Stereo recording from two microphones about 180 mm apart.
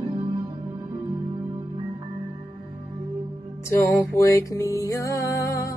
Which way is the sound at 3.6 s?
15° left (ahead or behind).